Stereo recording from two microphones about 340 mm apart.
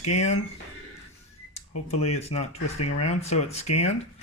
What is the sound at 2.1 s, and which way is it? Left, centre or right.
Speech, left.